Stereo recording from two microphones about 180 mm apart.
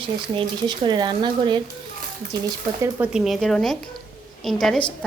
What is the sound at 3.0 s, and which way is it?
Speech, centre (ahead or behind).